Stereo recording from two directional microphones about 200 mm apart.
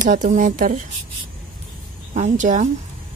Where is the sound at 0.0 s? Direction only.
40° right (ahead or behind).